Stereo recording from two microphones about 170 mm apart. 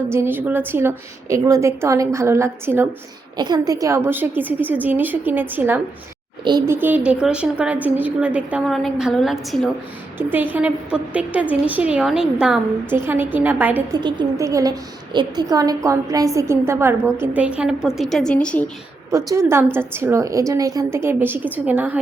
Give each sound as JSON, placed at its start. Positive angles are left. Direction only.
{"t": 0.1, "sound": "a woman's voice", "side_deg": -15}
{"t": 3.3, "sound": "a woman's voice", "side_deg": -25}
{"t": 13.9, "sound": "a woman's voice", "side_deg": -25}
{"t": 19.1, "sound": "a woman's voice", "side_deg": -15}